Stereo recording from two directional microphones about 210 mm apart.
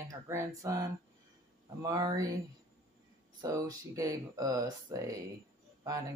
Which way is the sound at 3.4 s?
15° right (ahead or behind).